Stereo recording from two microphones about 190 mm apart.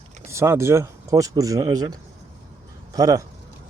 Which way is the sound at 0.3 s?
15° right (ahead or behind).